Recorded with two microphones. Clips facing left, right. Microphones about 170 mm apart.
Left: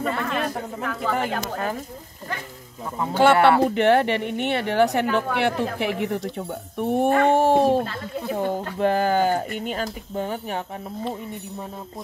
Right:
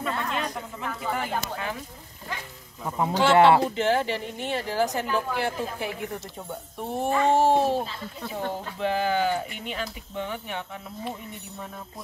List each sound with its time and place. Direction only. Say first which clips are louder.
0.0 s a sound: left 4 dB; 50° left (ahead or behind)
3.3 s speech: even; 20° right (ahead or behind)
3.6 s speech: left 6 dB; 65° left (ahead or behind)
6.3 s speech: left 7 dB; 60° left (ahead or behind); by 10.6 s 40° left (ahead or behind)